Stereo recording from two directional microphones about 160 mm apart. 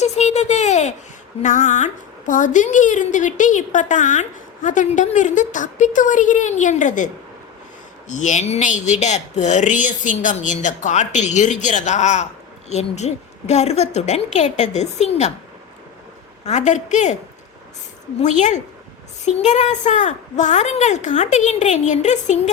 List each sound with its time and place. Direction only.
0.0 s a sound: 45° left (ahead or behind)
1.4 s speech: 50° left (ahead or behind)
16.5 s speech: 45° left (ahead or behind)
18.2 s speech: 45° left (ahead or behind)